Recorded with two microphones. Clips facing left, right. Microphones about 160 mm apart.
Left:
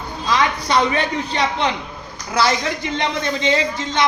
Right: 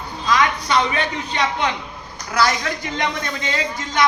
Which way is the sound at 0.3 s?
30° left (ahead or behind).